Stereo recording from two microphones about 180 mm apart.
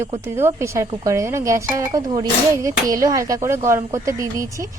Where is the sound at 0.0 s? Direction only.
15° right (ahead or behind).